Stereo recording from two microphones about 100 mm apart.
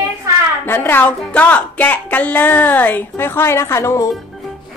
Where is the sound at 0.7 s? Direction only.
20° left (ahead or behind).